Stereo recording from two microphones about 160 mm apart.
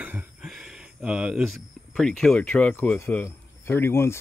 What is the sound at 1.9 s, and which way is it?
A man's voice, 5° left (ahead or behind).